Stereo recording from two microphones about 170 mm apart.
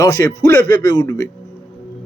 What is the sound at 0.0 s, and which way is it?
Speech, 15° left (ahead or behind).